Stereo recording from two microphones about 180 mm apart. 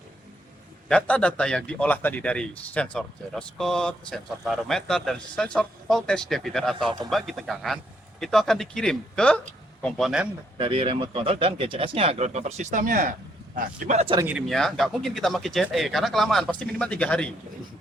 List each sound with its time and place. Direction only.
0.9 s a man's voice: 5° left (ahead or behind)
10.6 s speech: 30° right (ahead or behind)
14.3 s a man's voice: centre (ahead or behind)